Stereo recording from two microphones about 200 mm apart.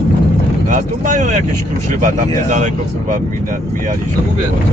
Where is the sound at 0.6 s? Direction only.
40° right (ahead or behind).